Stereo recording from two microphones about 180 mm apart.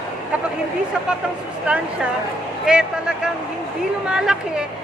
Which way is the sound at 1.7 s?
5° right (ahead or behind).